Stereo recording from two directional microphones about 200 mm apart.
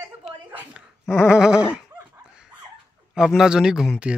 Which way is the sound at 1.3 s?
5° right (ahead or behind).